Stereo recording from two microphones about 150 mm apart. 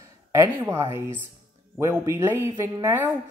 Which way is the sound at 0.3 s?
20° right (ahead or behind).